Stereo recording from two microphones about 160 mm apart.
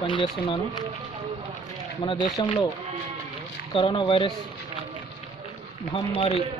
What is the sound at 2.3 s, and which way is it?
Speech, 30° left (ahead or behind).